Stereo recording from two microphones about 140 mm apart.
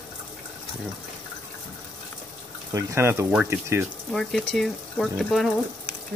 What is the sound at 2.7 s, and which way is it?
Speech, 20° right (ahead or behind).